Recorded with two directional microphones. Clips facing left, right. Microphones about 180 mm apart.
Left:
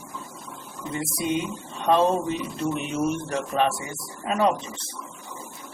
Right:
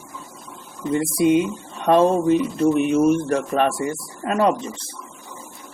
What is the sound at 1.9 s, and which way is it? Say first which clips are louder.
Speech: right 6 dB; 55° right (ahead or behind).